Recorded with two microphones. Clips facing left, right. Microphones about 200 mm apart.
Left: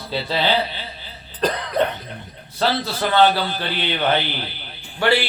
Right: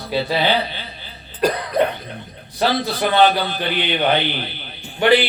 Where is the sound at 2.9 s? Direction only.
15° right (ahead or behind).